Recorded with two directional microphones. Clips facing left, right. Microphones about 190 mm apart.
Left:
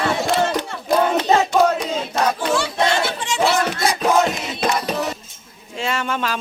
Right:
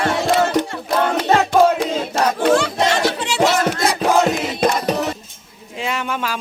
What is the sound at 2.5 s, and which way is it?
Music, 40° right (ahead or behind).